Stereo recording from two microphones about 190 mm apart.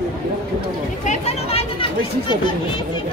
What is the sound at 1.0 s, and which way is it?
Speech, 35° left (ahead or behind).